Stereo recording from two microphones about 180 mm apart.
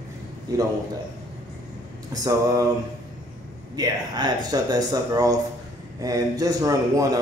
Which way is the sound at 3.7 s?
20° right (ahead or behind).